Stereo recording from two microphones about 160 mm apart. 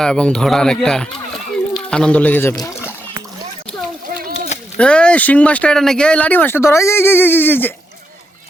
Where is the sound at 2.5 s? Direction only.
20° left (ahead or behind).